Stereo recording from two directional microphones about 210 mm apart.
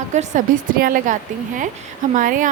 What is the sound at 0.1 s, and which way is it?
A woman's voice, 35° right (ahead or behind).